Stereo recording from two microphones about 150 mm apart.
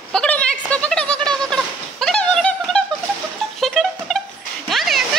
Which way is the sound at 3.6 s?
Centre (ahead or behind).